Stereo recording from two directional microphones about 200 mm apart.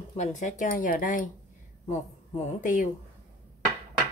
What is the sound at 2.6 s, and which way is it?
Speech, 40° left (ahead or behind).